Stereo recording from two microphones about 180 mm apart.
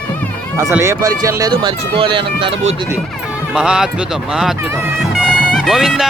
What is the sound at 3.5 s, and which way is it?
Speech, 5° right (ahead or behind).